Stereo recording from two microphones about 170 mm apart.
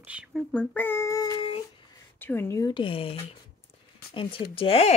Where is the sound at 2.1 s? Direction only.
10° left (ahead or behind).